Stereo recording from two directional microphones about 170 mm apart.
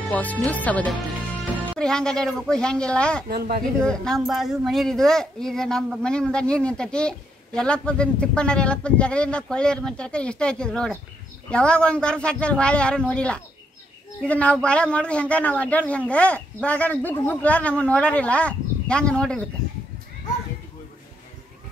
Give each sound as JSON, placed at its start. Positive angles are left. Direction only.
{"t": 0.1, "sound": "a man's voice", "side_deg": 10}
{"t": 3.3, "sound": "speech", "side_deg": -65}
{"t": 3.8, "sound": "a man's voice", "side_deg": 5}